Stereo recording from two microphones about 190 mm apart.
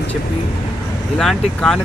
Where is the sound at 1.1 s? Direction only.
Centre (ahead or behind).